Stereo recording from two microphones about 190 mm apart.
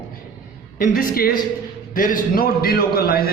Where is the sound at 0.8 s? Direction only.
50° left (ahead or behind).